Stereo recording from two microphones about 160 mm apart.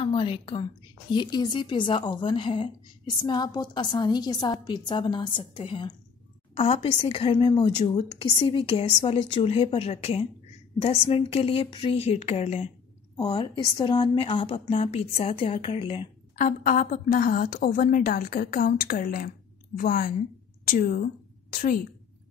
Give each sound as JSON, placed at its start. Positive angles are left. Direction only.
{"t": 0.0, "sound": "a woman's voice", "side_deg": 30}
{"t": 13.1, "sound": "a woman's voice", "side_deg": 25}
{"t": 16.3, "sound": "a woman's voice", "side_deg": 55}